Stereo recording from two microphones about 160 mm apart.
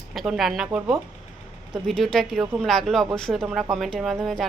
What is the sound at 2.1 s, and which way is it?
Speech, centre (ahead or behind).